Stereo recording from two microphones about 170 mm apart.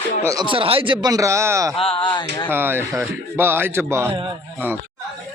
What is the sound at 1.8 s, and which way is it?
Speech, 35° left (ahead or behind).